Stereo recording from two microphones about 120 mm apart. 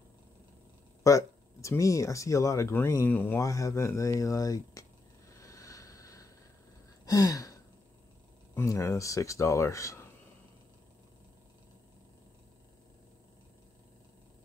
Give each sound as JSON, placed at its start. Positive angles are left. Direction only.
{"t": 1.0, "sound": "speech", "side_deg": 25}
{"t": 3.4, "sound": "speech", "side_deg": 25}
{"t": 5.4, "sound": "a sound", "side_deg": 30}
{"t": 7.1, "sound": "gasp", "side_deg": 30}
{"t": 8.5, "sound": "speech", "side_deg": 25}